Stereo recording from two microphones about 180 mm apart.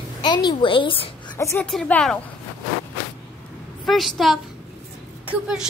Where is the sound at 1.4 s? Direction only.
15° left (ahead or behind).